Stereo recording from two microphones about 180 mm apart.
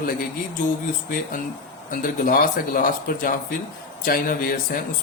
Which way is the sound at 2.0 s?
50° left (ahead or behind).